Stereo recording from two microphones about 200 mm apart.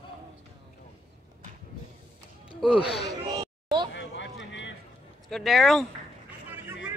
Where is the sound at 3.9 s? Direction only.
65° left (ahead or behind).